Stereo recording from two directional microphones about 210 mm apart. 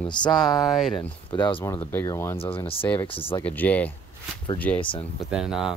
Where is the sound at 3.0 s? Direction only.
25° left (ahead or behind).